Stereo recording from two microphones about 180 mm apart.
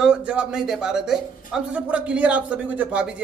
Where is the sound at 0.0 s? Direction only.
5° right (ahead or behind).